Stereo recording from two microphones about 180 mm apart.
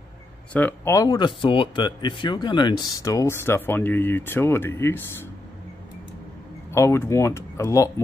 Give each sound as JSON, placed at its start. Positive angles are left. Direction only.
{"t": 0.5, "sound": "speech", "side_deg": 10}
{"t": 6.7, "sound": "speech", "side_deg": 15}